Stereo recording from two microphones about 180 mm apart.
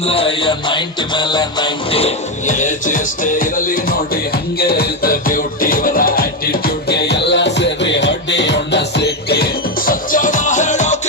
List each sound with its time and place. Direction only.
0.0 s music: 30° left (ahead or behind)